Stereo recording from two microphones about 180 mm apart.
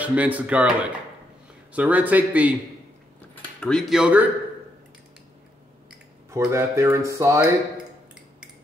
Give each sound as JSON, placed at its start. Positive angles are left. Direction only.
{"t": 0.0, "sound": "speech", "side_deg": -10}
{"t": 3.6, "sound": "speech", "side_deg": 0}
{"t": 6.3, "sound": "speech", "side_deg": -15}